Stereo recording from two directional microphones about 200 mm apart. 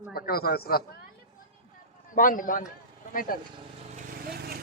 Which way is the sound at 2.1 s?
45° left (ahead or behind).